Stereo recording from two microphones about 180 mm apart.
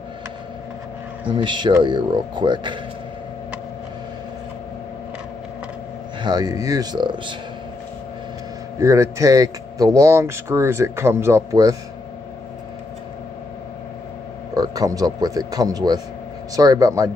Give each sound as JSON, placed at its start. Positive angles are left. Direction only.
{"t": 1.3, "sound": "speech", "side_deg": -25}
{"t": 6.2, "sound": "speech", "side_deg": -20}
{"t": 8.7, "sound": "speech", "side_deg": -15}
{"t": 14.5, "sound": "speech", "side_deg": -20}